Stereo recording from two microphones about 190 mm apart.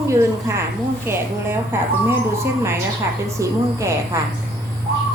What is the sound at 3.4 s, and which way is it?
Speech, 15° right (ahead or behind).